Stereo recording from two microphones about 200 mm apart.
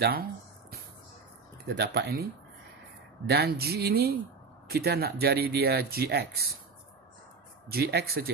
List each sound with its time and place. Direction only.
0.0 s a sound: 50° right (ahead or behind)
1.8 s speech: 55° right (ahead or behind)
3.3 s speech: 55° right (ahead or behind)
7.6 s speech: 50° right (ahead or behind)